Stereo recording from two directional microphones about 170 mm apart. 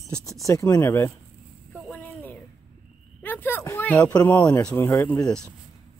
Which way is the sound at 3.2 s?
10° left (ahead or behind).